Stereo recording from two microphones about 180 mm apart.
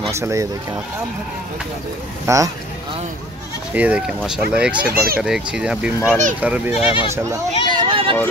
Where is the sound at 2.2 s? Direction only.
15° right (ahead or behind).